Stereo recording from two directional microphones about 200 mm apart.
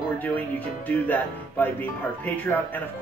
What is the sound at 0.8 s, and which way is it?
Speech, 10° left (ahead or behind).